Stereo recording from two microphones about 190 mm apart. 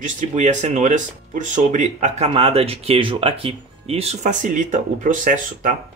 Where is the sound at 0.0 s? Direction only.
40° right (ahead or behind).